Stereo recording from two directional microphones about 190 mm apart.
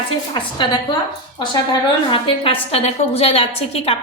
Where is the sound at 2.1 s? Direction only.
30° left (ahead or behind).